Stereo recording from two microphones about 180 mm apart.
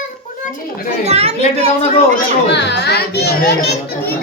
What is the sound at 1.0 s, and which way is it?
Speech, 35° right (ahead or behind).